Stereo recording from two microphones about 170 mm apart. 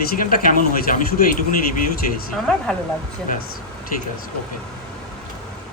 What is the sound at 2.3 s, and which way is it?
Speech, 5° left (ahead or behind).